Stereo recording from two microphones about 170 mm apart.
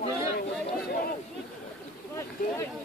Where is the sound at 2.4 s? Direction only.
55° left (ahead or behind).